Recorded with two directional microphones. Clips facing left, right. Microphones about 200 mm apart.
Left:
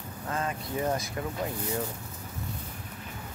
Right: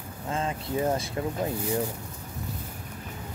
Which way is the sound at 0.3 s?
25° right (ahead or behind).